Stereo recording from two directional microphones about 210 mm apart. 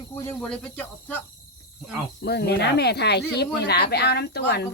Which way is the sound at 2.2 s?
50° left (ahead or behind).